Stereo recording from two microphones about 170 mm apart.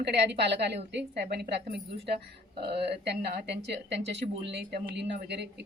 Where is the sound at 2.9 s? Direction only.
80° right.